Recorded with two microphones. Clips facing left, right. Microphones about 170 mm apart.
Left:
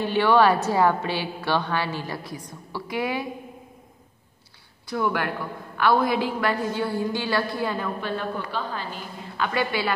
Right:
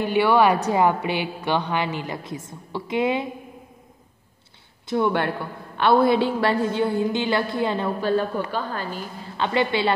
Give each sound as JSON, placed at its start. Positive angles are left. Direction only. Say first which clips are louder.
{"t": 0.0, "sound": "a woman's voice", "louder": "right 1 dB", "side_deg": -10}
{"t": 4.8, "sound": "a woman's voice", "louder": "right 4 dB", "side_deg": -25}
{"t": 8.0, "sound": "a woman's voice", "louder": "right 6 dB", "side_deg": -35}
{"t": 9.4, "sound": "a woman's voice", "louder": "right 4 dB", "side_deg": -25}